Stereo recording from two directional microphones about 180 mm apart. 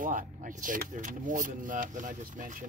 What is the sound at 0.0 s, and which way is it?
Speech, 45° right (ahead or behind).